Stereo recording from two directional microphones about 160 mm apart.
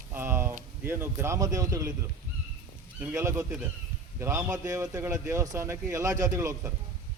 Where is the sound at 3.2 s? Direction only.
20° right (ahead or behind).